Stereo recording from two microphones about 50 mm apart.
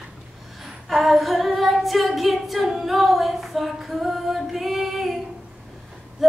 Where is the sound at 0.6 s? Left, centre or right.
Centre.